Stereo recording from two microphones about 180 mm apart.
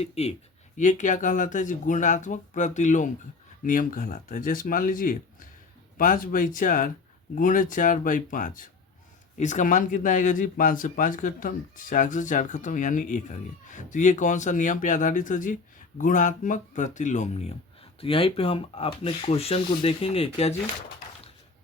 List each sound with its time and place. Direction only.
0.0 s speech: 35° left (ahead or behind)